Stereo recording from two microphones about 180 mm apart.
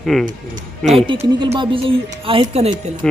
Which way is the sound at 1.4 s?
25° right (ahead or behind).